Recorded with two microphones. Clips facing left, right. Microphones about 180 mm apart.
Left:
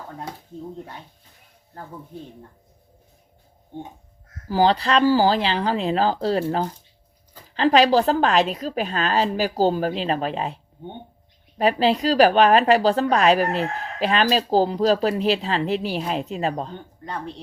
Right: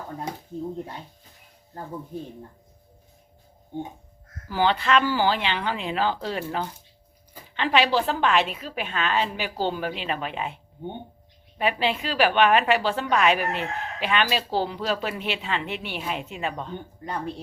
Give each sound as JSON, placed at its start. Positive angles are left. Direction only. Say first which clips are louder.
{"t": 4.4, "sound": "a woman's voice", "louder": "left 4 dB", "side_deg": 35}
{"t": 17.1, "sound": "speech", "louder": "right 1 dB", "side_deg": -5}